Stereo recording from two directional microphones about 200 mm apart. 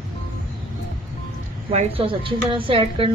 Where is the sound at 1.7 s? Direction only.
30° right (ahead or behind).